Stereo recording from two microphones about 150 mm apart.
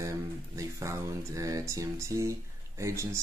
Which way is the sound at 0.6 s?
20° right (ahead or behind).